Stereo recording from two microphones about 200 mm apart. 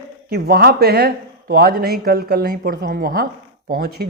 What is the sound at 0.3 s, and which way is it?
Speech, 50° right (ahead or behind).